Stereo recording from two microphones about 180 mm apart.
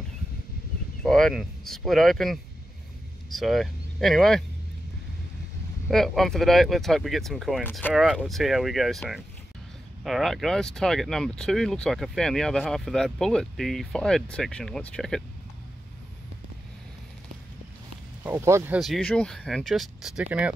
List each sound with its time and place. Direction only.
1.0 s speech: 5° left (ahead or behind)
5.9 s speech: centre (ahead or behind)
10.0 s speech: centre (ahead or behind)
18.2 s speech: 15° right (ahead or behind)
18.8 s speech: 5° left (ahead or behind)